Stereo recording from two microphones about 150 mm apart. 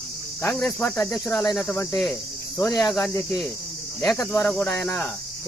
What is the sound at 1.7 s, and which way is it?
Cricket, 20° left (ahead or behind).